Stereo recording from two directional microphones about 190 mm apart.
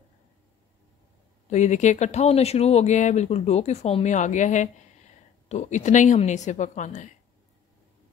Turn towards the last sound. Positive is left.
turn(degrees=40)  # may be behind; listen again after turning